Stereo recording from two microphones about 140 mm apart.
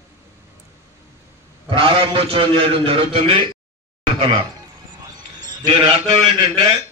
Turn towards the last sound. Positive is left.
turn(degrees=-35)  # may be behind; listen again after turning